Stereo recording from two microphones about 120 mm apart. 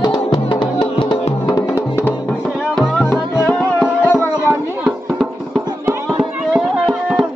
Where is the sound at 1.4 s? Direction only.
30° left (ahead or behind).